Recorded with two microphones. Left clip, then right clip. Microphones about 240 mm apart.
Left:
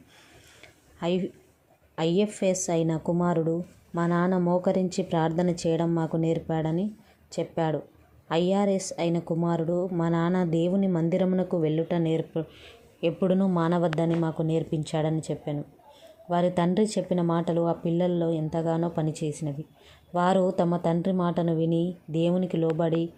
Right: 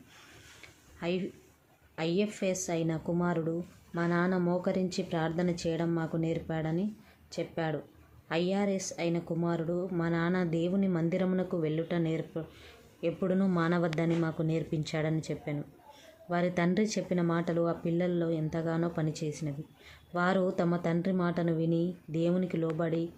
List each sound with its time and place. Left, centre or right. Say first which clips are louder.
0.9 s speech: left 6 dB; centre